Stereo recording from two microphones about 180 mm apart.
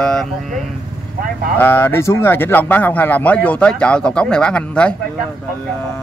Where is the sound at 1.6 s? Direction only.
10° left (ahead or behind).